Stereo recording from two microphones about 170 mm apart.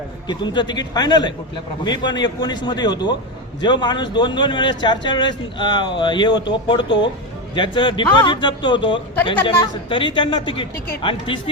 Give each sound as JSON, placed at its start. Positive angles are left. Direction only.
{"t": 0.3, "sound": "a man's voice", "side_deg": 25}